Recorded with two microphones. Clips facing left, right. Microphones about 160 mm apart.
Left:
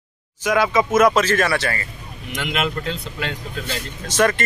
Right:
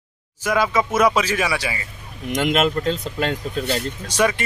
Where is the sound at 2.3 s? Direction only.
45° right (ahead or behind).